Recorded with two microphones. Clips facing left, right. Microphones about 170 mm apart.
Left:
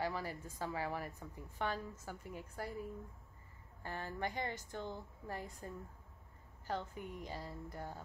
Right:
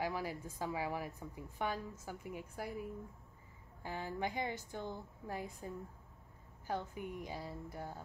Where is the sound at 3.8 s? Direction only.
15° right (ahead or behind).